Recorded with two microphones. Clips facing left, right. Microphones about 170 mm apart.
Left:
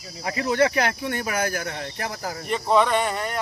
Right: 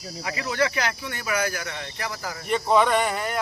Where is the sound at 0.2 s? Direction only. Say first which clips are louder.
Left 4 dB; 40° left (ahead or behind).